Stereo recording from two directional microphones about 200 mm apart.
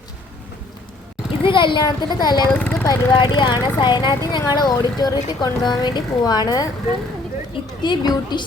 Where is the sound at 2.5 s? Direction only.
5° left (ahead or behind).